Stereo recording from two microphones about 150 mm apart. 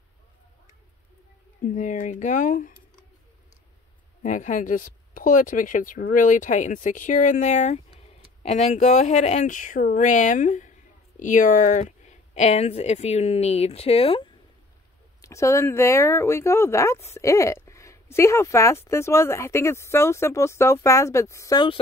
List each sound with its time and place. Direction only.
1.7 s speech: 55° left (ahead or behind)
4.2 s speech: 55° left (ahead or behind); by 14.3 s 35° left (ahead or behind)
15.2 s speech: 20° left (ahead or behind)